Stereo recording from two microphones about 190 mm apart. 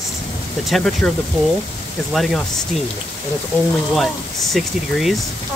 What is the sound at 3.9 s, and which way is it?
Speech, centre (ahead or behind).